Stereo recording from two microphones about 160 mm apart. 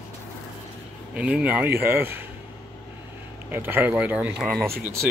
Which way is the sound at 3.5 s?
10° right (ahead or behind).